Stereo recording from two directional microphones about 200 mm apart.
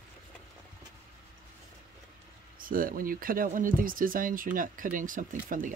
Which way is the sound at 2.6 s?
45° right (ahead or behind).